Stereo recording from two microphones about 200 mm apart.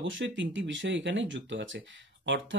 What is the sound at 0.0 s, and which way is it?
Speech, 70° right (ahead or behind).